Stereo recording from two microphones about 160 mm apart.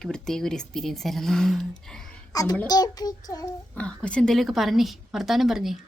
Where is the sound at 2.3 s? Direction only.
25° left (ahead or behind).